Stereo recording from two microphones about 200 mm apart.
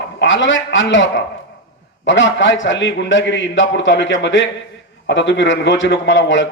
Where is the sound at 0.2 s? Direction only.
65° left (ahead or behind).